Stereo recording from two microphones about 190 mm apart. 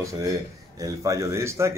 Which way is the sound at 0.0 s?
15° right (ahead or behind).